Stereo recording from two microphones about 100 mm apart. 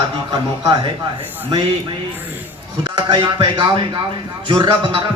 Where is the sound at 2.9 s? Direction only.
50° right (ahead or behind).